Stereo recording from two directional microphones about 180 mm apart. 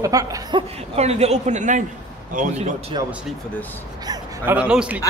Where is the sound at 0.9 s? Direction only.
35° right (ahead or behind).